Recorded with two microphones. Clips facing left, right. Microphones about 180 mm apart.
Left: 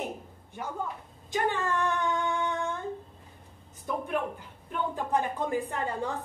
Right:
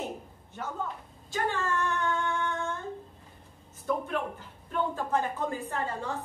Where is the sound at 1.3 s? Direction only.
15° left (ahead or behind).